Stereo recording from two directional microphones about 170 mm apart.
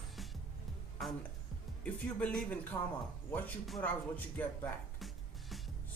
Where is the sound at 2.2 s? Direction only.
5° left (ahead or behind).